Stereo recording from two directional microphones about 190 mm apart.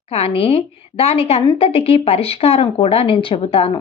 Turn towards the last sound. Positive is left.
turn(degrees=30)  # may be behind; listen again after turning